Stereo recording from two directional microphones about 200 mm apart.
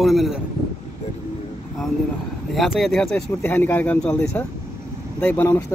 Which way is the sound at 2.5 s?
Centre (ahead or behind).